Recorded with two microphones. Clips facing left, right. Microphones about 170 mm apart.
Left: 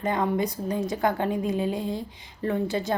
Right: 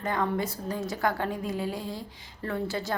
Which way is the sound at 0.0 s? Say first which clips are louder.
Left 4 dB; 20° left (ahead or behind).